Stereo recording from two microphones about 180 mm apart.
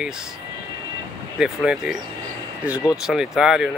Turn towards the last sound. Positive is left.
turn(degrees=-5)  # may be behind; listen again after turning